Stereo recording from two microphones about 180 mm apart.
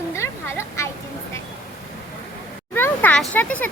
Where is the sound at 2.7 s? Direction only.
10° left (ahead or behind).